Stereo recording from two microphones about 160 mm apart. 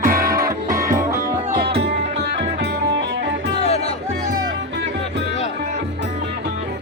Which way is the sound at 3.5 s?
40° left (ahead or behind).